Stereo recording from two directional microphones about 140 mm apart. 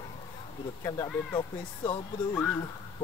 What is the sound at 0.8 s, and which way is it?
Speech, 20° left (ahead or behind).